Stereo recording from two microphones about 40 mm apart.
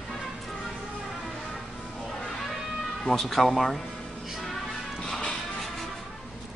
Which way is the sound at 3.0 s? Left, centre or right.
Centre.